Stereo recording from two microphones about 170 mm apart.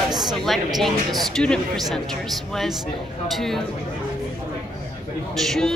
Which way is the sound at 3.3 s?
Centre (ahead or behind).